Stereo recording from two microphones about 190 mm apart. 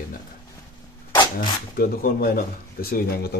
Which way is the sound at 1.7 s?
50° left (ahead or behind).